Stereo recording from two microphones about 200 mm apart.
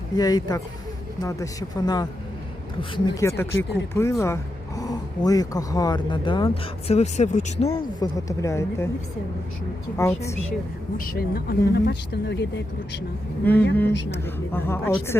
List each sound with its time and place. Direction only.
0.2 s a woman's voice: 20° left (ahead or behind)
7.9 s a woman's voice: 20° left (ahead or behind)
10.0 s a woman's voice: 15° left (ahead or behind)
10.9 s speech: 50° left (ahead or behind)
13.4 s a woman's voice: 10° left (ahead or behind)